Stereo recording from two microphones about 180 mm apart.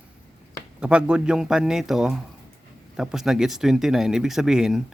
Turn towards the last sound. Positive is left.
turn(degrees=0)  # may be behind; listen again after turning